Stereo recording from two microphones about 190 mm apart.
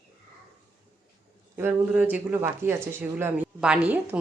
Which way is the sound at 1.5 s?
10° right (ahead or behind).